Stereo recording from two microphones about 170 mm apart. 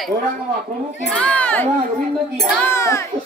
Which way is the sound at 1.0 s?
5° left (ahead or behind).